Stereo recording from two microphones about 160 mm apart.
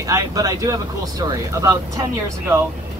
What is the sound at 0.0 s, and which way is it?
Speech, 20° right (ahead or behind).